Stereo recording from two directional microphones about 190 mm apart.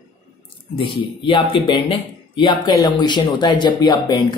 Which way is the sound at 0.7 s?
25° left (ahead or behind).